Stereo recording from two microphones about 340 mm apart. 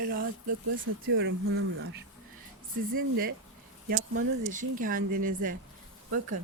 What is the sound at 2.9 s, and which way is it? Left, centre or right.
Speech, right.